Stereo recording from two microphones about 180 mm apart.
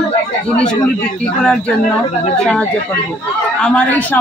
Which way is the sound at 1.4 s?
5° left (ahead or behind).